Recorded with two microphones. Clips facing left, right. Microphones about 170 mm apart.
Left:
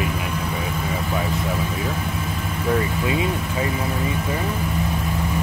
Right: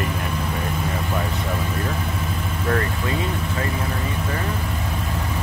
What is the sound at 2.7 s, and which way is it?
Speech, 10° left (ahead or behind).